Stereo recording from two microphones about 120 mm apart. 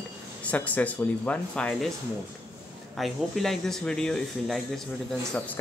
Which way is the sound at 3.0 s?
Centre (ahead or behind).